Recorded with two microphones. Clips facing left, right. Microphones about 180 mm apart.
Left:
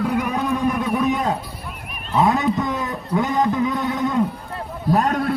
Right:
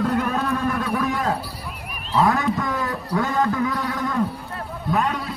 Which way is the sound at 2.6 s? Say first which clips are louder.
Left 1 dB; 20° left (ahead or behind).